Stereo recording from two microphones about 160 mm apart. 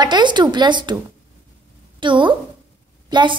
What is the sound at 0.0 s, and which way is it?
Speech, 25° right (ahead or behind).